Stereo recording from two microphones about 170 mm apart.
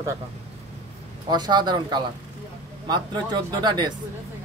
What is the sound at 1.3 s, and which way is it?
Speech, 25° right (ahead or behind).